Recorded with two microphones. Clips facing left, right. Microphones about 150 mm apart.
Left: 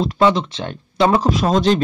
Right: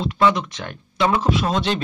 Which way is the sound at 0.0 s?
35° left (ahead or behind).